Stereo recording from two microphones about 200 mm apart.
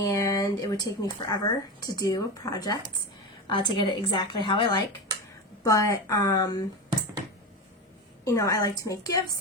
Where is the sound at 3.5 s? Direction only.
25° left (ahead or behind).